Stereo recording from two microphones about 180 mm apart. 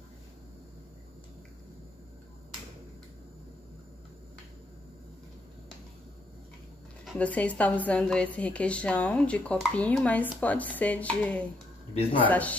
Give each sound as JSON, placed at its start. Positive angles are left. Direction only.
{"t": 7.1, "sound": "a woman's voice", "side_deg": 5}
{"t": 11.9, "sound": "a man's voice", "side_deg": 30}
{"t": 12.3, "sound": "a woman's voice", "side_deg": 10}